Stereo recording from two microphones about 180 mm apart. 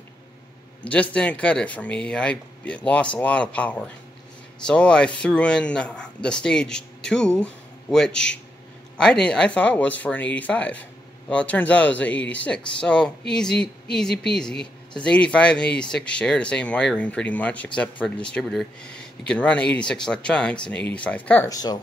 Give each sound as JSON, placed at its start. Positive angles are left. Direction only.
{"t": 0.8, "sound": "speech", "side_deg": 10}
{"t": 21.5, "sound": "speech", "side_deg": 20}